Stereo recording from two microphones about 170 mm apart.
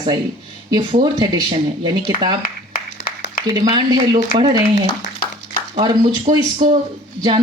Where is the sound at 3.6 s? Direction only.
25° right (ahead or behind).